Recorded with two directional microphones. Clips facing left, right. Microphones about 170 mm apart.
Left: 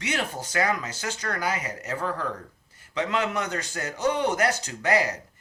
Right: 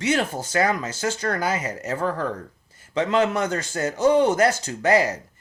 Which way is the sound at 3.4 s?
30° right (ahead or behind).